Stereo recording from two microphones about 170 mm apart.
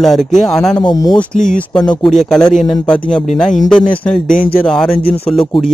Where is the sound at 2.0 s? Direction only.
5° left (ahead or behind).